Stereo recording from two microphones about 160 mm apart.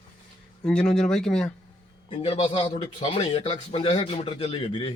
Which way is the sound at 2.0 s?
35° left (ahead or behind).